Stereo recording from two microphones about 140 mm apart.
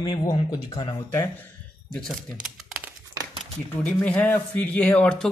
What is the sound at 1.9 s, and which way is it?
Speech, centre (ahead or behind).